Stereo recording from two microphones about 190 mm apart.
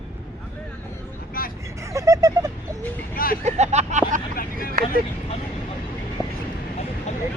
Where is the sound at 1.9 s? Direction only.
15° right (ahead or behind).